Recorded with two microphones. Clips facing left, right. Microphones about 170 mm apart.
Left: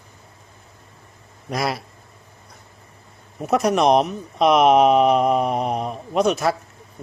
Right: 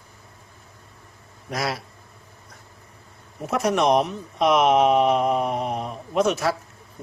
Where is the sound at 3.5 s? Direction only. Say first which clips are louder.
Left 3 dB; 65° left (ahead or behind).